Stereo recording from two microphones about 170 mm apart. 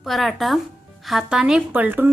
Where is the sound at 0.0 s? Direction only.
Centre (ahead or behind).